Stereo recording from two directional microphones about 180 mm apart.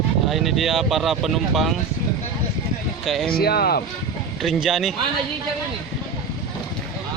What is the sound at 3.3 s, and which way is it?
Speech, 60° left (ahead or behind).